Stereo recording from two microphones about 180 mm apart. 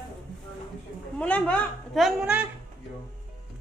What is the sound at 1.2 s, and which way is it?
A woman's voice, 10° left (ahead or behind).